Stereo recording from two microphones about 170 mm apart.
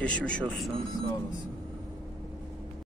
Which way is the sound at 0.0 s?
5° left (ahead or behind).